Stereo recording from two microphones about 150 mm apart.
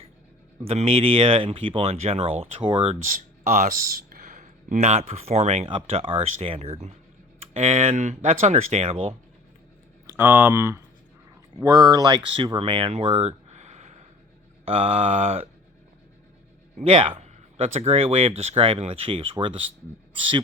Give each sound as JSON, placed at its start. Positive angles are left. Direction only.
{"t": 0.7, "sound": "speech", "side_deg": -40}
{"t": 3.0, "sound": "speech", "side_deg": -65}
{"t": 10.1, "sound": "speech", "side_deg": -15}
{"t": 16.7, "sound": "speech", "side_deg": -40}